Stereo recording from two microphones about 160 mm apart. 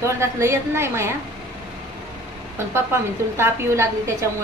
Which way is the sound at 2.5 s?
15° right (ahead or behind).